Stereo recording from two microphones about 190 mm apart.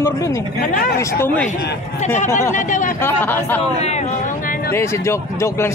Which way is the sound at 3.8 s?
35° left (ahead or behind).